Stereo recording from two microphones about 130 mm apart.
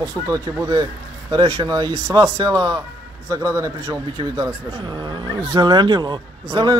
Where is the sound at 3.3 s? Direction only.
25° right (ahead or behind).